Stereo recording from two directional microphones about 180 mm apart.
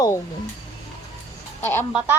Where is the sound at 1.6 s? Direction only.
10° left (ahead or behind).